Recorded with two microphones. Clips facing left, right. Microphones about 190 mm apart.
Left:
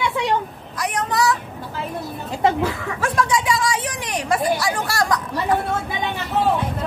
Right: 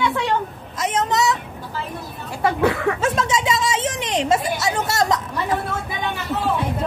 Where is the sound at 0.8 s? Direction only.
20° right (ahead or behind).